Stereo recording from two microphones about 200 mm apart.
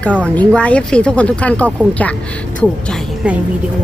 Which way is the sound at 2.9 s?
5° right (ahead or behind).